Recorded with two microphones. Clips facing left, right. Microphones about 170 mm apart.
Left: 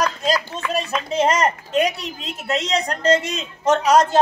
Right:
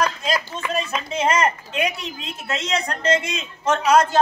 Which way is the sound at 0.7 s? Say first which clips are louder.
Left 5 dB; 40° left (ahead or behind).